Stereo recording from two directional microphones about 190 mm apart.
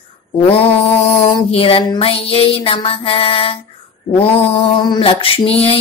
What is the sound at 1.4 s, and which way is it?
Speech, 30° left (ahead or behind).